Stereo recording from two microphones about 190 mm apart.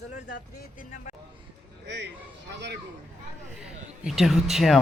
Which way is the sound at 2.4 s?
65° right (ahead or behind).